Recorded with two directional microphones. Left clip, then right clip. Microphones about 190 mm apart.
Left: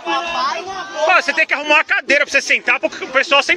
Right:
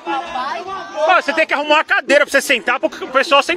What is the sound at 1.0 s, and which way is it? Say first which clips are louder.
Speech: even; 10° right (ahead or behind).